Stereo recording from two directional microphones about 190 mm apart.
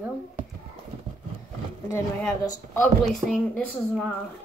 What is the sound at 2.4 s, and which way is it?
Speech, 20° left (ahead or behind).